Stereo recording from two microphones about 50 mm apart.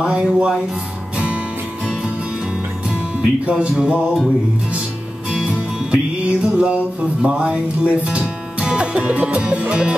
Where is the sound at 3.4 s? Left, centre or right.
Right.